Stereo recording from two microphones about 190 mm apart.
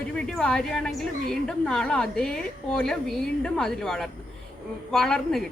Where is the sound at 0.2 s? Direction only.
5° left (ahead or behind).